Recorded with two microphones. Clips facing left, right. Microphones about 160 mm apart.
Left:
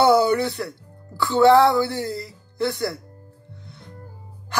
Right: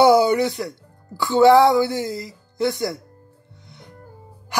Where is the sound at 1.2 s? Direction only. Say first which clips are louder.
Right 2 dB; 15° right (ahead or behind).